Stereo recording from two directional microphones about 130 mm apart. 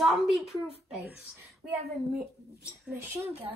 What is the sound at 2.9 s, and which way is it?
Speech, 15° right (ahead or behind).